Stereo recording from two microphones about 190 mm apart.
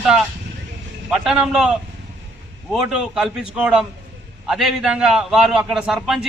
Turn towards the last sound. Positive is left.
turn(degrees=0)  # may be behind; listen again after turning